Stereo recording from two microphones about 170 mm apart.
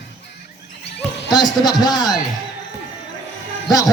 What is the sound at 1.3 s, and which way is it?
Speech, 25° left (ahead or behind).